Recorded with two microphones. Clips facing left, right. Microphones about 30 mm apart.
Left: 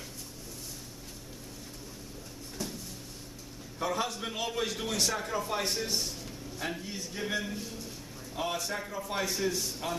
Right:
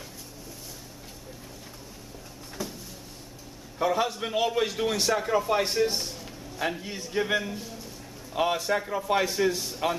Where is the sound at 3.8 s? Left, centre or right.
Centre.